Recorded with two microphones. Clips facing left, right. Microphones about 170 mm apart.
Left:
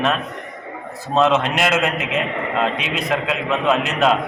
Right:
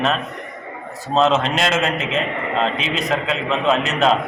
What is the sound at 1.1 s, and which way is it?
A man's voice, 10° left (ahead or behind).